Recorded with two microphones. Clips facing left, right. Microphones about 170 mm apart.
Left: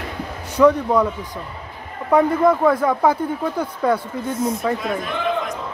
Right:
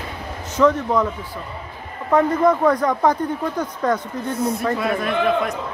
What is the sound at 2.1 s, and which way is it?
Speech, 5° left (ahead or behind).